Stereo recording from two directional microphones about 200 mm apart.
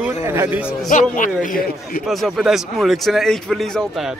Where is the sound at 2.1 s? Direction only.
Centre (ahead or behind).